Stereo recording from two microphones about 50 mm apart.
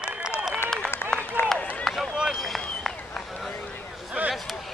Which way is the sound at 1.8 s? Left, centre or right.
Centre.